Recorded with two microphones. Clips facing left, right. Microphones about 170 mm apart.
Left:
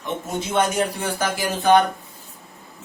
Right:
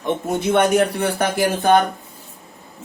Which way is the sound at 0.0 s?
60° right (ahead or behind).